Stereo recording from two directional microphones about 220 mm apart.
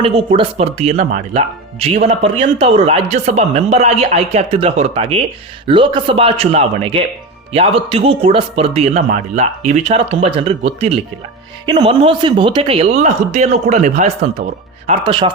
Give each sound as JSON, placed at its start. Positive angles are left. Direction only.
{"t": 0.0, "sound": "speech", "side_deg": -25}